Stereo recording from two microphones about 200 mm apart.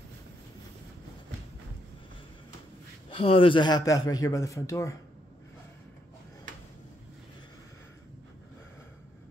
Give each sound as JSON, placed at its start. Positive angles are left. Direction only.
{"t": 3.2, "sound": "a man's voice", "side_deg": 25}